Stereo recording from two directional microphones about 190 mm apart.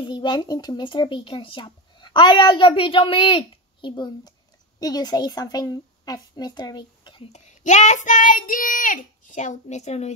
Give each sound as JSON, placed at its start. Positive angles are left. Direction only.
{"t": 0.0, "sound": "a woman's voice", "side_deg": 25}
{"t": 7.3, "sound": "a child's voice", "side_deg": 40}